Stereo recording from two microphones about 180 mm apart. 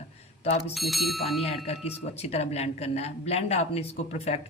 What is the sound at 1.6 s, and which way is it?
A woman's voice, 35° left (ahead or behind).